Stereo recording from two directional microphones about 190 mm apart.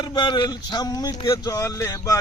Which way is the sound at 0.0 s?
25° left (ahead or behind).